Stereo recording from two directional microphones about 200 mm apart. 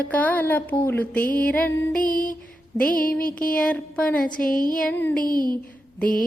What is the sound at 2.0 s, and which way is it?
Female singing, 45° left (ahead or behind).